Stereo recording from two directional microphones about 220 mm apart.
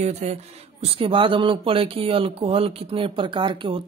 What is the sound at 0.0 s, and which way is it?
Speech, 30° right (ahead or behind).